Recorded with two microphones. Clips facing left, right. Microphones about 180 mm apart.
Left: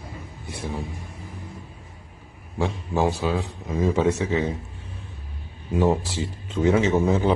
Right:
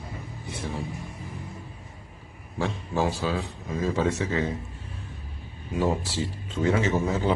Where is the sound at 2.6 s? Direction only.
20° left (ahead or behind).